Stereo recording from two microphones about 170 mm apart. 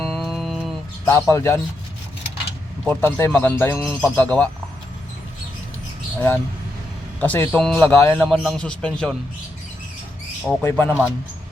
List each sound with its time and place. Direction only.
0.0 s music: centre (ahead or behind)
1.1 s speech: 15° left (ahead or behind)
2.8 s speech: 10° left (ahead or behind)
6.1 s a man's voice: 10° left (ahead or behind)
10.6 s speech: 15° left (ahead or behind)
10.8 s speech: 10° right (ahead or behind)